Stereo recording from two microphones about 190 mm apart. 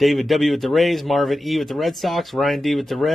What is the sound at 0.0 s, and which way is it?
Speech, centre (ahead or behind).